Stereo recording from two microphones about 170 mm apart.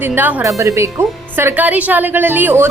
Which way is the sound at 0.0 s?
10° right (ahead or behind).